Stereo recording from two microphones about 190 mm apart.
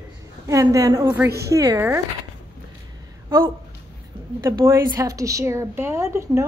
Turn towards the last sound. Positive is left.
turn(degrees=-15)  # may be behind; listen again after turning